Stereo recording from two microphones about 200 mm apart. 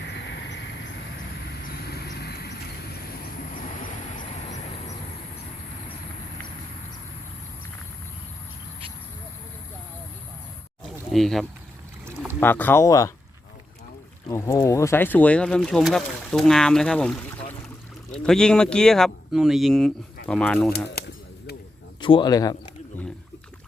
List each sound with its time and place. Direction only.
0.1 s vehicle: 60° left (ahead or behind)
1.9 s vehicle: 55° left (ahead or behind)
3.5 s vehicle: 40° left (ahead or behind)
10.9 s a sound: centre (ahead or behind)
12.4 s speech: 10° left (ahead or behind)
14.3 s speech: 15° left (ahead or behind)
22.0 s speech: 20° left (ahead or behind)